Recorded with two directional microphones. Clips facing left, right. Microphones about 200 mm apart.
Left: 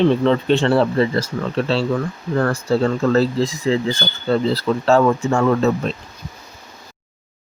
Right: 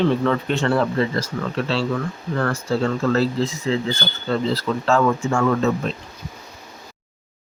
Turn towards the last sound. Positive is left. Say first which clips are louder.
# left 3 dB
turn(degrees=35)  # may be behind; listen again after turning